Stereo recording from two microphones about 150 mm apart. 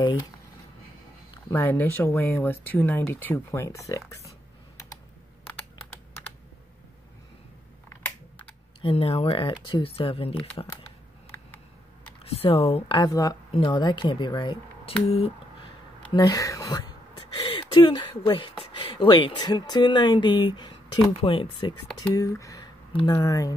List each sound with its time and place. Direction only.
1.5 s speech: 15° left (ahead or behind)
8.8 s speech: 40° left (ahead or behind)
12.3 s speech: 40° left (ahead or behind); by 13.4 s 25° left (ahead or behind)
13.5 s speech: 35° left (ahead or behind)
15.0 s a sound: 40° left (ahead or behind); by 16.8 s 25° left (ahead or behind)
17.4 s speech: 35° left (ahead or behind)
22.1 s speech: 20° left (ahead or behind)